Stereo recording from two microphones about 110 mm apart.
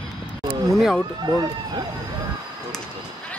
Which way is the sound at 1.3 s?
35° right (ahead or behind).